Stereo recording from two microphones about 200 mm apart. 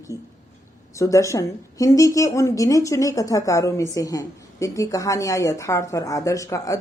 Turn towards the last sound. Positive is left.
turn(degrees=15)  # may be behind; listen again after turning